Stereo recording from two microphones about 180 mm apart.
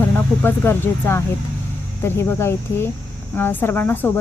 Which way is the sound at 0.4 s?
10° left (ahead or behind).